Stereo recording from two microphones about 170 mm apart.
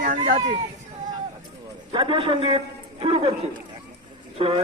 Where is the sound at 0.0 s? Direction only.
55° right (ahead or behind).